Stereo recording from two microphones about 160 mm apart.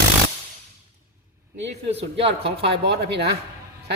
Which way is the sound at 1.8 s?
40° right (ahead or behind).